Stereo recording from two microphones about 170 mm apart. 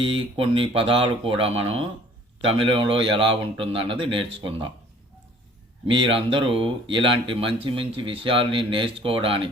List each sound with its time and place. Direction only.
0.0 s speech: 30° right (ahead or behind)
5.9 s speech: 30° right (ahead or behind)